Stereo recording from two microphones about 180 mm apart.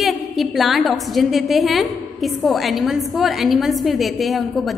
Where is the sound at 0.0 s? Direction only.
Centre (ahead or behind).